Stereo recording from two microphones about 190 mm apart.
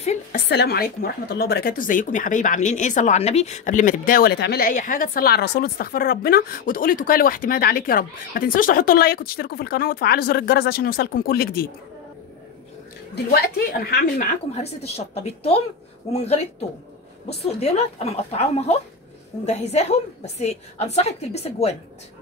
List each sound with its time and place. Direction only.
0.0 s a woman's voice: 35° left (ahead or behind)
0.5 s speech: 60° left (ahead or behind)
13.1 s speech: 55° left (ahead or behind)
14.5 s a woman's voice: 35° left (ahead or behind)
17.4 s a woman's voice: 35° left (ahead or behind)